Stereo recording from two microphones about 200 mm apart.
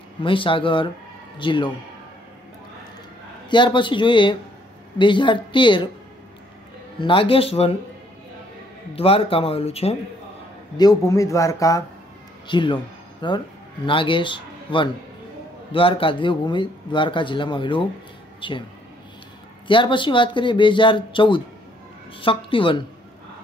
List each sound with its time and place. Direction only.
0.2 s speech: 25° left (ahead or behind)
3.4 s speech: 25° left (ahead or behind)
7.0 s speech: 25° left (ahead or behind)
8.9 s speech: 30° left (ahead or behind)
10.8 s speech: 15° left (ahead or behind)
19.7 s speech: 25° left (ahead or behind)